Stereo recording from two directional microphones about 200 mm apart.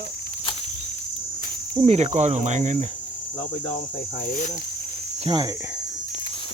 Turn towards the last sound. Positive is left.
turn(degrees=-20)  # may be behind; listen again after turning